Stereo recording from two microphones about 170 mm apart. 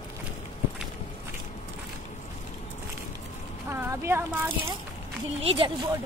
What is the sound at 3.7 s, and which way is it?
Speech, 15° right (ahead or behind).